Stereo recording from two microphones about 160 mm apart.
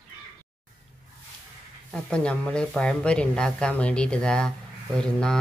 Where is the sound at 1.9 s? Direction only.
5° left (ahead or behind).